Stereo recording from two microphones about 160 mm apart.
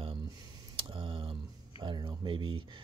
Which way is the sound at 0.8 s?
30° right (ahead or behind).